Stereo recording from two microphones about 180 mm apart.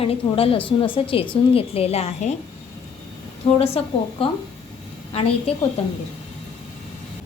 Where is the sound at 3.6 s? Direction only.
35° left (ahead or behind).